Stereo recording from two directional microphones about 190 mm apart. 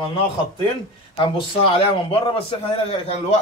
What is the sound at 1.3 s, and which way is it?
A man's voice, 30° left (ahead or behind).